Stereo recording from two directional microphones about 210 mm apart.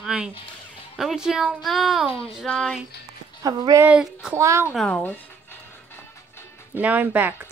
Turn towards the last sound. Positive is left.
turn(degrees=-10)  # may be behind; listen again after turning